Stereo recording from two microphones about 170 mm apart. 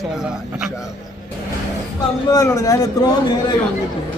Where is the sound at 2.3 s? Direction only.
20° left (ahead or behind).